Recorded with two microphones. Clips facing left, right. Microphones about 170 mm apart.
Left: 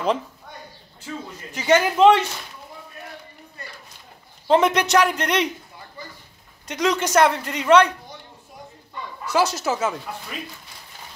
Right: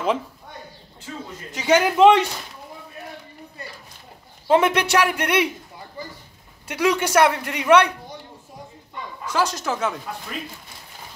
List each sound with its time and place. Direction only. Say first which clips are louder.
1.5 s speech: even; 10° right (ahead or behind)
4.5 s speech: even; 5° right (ahead or behind)
6.7 s speech: right 1 dB; 10° right (ahead or behind)
9.2 s speech: left 2 dB; 10° left (ahead or behind)